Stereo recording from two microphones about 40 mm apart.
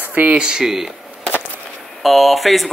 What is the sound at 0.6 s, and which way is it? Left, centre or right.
Speech, centre.